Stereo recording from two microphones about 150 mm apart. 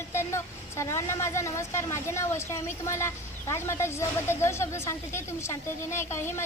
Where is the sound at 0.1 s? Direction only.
15° left (ahead or behind).